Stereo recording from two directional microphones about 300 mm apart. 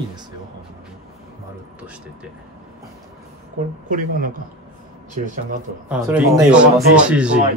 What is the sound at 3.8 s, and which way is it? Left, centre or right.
Speech, right.